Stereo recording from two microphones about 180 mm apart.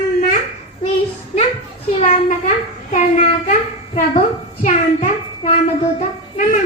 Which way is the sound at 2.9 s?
35° left (ahead or behind).